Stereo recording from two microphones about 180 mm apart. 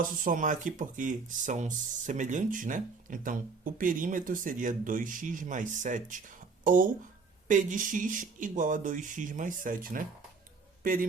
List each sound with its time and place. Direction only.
0.3 s speech: 45° right (ahead or behind)